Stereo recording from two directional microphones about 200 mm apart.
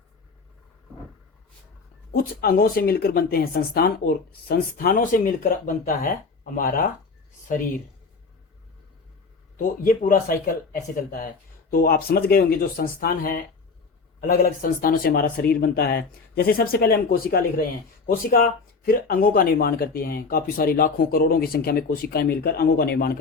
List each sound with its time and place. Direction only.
2.1 s speech: 50° left (ahead or behind)
9.8 s speech: 40° left (ahead or behind)